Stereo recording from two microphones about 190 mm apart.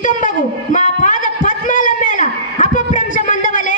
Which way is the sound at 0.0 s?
40° left (ahead or behind).